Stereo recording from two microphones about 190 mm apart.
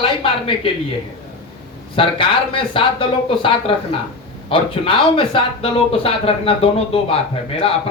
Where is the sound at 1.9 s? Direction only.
25° left (ahead or behind).